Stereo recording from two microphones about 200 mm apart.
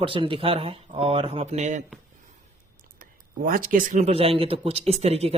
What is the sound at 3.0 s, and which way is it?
Speech, 45° right (ahead or behind).